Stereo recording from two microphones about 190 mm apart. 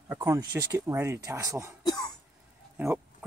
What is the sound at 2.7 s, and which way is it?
Speech, 15° right (ahead or behind).